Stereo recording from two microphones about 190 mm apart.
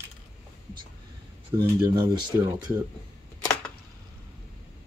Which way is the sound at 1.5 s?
15° right (ahead or behind).